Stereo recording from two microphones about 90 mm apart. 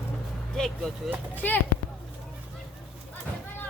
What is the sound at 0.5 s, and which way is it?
Speech, 5° left (ahead or behind).